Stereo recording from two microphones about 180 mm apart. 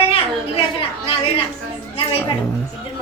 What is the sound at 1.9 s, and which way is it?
Music, 30° left (ahead or behind).